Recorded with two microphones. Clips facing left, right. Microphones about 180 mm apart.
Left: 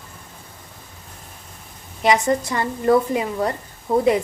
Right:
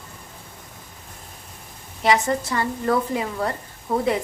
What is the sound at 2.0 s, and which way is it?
A woman's voice, 20° left (ahead or behind).